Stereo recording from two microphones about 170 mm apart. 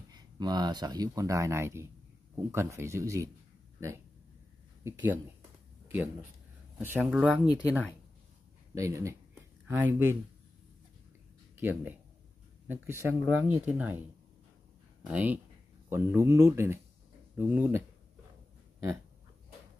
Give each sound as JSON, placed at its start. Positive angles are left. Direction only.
{"t": 0.1, "sound": "speech", "side_deg": -25}
{"t": 4.8, "sound": "speech", "side_deg": -10}
{"t": 6.8, "sound": "speech", "side_deg": -10}
{"t": 7.4, "sound": "speech", "side_deg": 25}
{"t": 8.7, "sound": "speech", "side_deg": -20}
{"t": 11.5, "sound": "speech", "side_deg": -10}
{"t": 15.0, "sound": "speech", "side_deg": -10}